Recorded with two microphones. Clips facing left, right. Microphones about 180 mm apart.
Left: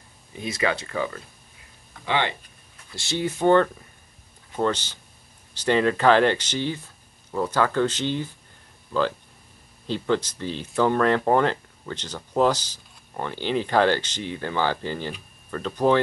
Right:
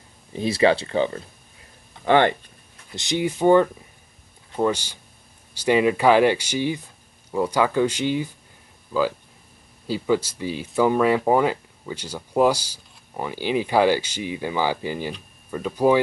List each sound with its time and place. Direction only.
0.3 s speech: 30° right (ahead or behind)
2.0 s speech: 50° right (ahead or behind)
2.9 s speech: 15° right (ahead or behind)